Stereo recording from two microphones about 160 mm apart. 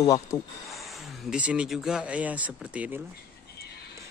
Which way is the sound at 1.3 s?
5° right (ahead or behind).